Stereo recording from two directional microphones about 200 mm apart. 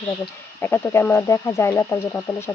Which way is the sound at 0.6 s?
10° left (ahead or behind).